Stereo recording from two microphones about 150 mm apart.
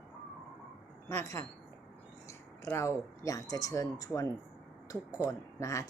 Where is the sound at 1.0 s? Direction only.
20° left (ahead or behind).